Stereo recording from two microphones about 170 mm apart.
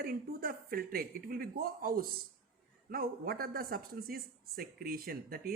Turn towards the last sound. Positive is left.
turn(degrees=-60)  # may be behind; listen again after turning